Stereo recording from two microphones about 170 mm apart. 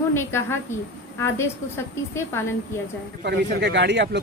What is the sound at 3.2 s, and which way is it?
Speech, 85° right.